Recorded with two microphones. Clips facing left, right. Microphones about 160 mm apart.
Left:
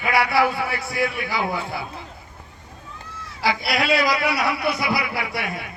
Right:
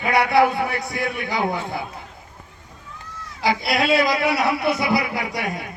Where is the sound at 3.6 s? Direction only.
20° right (ahead or behind).